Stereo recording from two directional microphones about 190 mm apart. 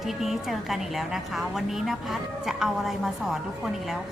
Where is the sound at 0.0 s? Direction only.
Centre (ahead or behind).